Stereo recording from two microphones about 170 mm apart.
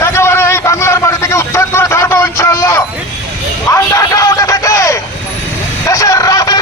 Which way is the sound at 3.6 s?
15° left (ahead or behind).